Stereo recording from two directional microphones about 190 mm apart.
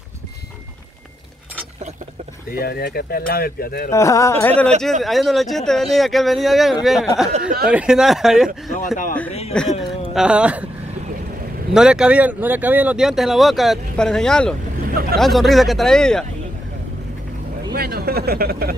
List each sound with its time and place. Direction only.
2.5 s speech: 55° left (ahead or behind)
3.9 s speech: 15° left (ahead or behind); by 8.5 s centre (ahead or behind)
8.7 s speech: 40° left (ahead or behind)
9.5 s speech: centre (ahead or behind)
11.7 s speech: 5° right (ahead or behind)
17.7 s speech: 55° right (ahead or behind)